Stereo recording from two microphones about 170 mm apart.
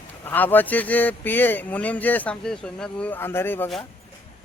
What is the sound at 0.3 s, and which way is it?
A man's voice, 10° left (ahead or behind).